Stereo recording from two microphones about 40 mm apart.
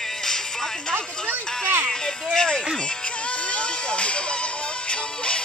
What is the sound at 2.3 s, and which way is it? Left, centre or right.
Speech, centre.